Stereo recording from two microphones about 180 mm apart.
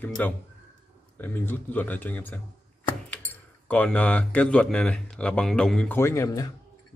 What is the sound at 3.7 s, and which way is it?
Speech, 5° left (ahead or behind).